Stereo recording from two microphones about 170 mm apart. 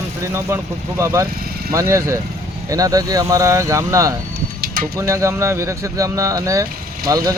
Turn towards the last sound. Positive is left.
turn(degrees=-20)  # may be behind; listen again after turning